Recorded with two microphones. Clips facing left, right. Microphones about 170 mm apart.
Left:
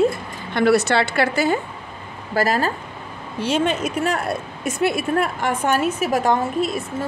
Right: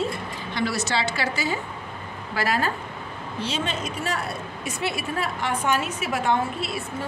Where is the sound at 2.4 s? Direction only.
40° left (ahead or behind).